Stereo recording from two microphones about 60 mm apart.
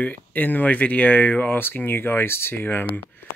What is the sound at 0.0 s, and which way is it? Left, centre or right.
Speech, left.